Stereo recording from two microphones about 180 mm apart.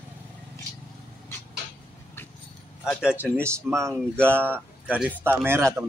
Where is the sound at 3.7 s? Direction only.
15° right (ahead or behind).